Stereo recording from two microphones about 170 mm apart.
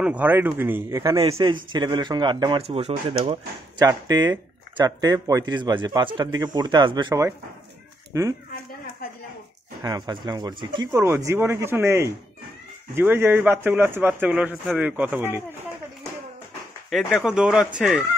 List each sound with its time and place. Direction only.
0.0 s speech: 10° right (ahead or behind)
1.1 s speech: 30° right (ahead or behind)
9.8 s speech: 25° right (ahead or behind)
10.9 s speech: 15° right (ahead or behind)
16.9 s speech: centre (ahead or behind)